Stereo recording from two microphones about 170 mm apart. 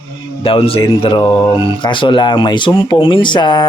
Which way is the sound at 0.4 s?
30° left (ahead or behind).